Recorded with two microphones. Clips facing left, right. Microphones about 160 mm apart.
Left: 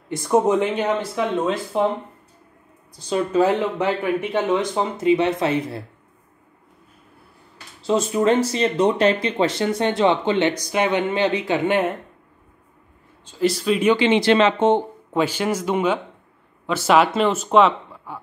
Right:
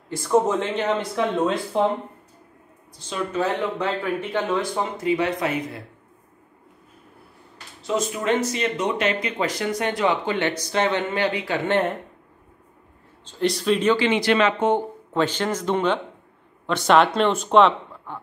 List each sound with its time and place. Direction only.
0.1 s speech: 15° left (ahead or behind)
3.1 s speech: 35° left (ahead or behind)
3.7 s speech: 25° left (ahead or behind)
7.8 s speech: 30° left (ahead or behind)
10.6 s speech: 15° left (ahead or behind)
13.2 s a man's voice: 5° left (ahead or behind)
13.9 s speech: 25° left (ahead or behind)
15.1 s speech: 10° left (ahead or behind)